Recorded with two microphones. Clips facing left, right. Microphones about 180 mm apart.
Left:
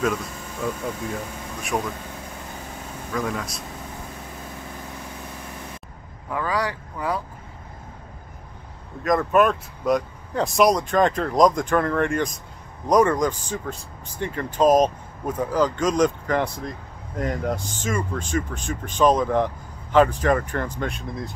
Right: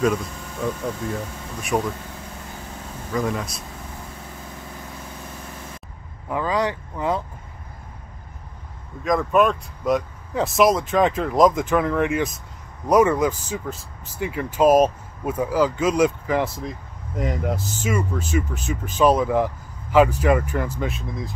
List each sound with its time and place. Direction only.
0.0 s speech: centre (ahead or behind)
1.7 s speech: 10° right (ahead or behind)
3.1 s speech: 5° right (ahead or behind)
6.3 s speech: 20° right (ahead or behind)
9.0 s speech: centre (ahead or behind)